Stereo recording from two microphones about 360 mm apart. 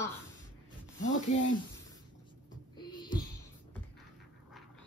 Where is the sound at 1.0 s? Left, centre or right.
Centre.